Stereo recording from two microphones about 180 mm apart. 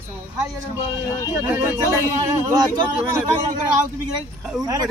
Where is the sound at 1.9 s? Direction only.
15° right (ahead or behind).